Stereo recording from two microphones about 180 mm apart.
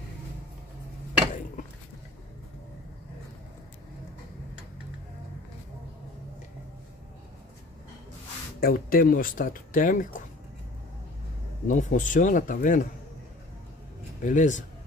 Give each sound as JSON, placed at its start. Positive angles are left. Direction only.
{"t": 8.5, "sound": "speech", "side_deg": 55}
{"t": 11.6, "sound": "speech", "side_deg": 45}
{"t": 14.2, "sound": "speech", "side_deg": 45}